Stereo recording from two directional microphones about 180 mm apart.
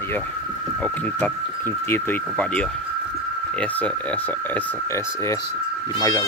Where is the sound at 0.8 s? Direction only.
10° left (ahead or behind).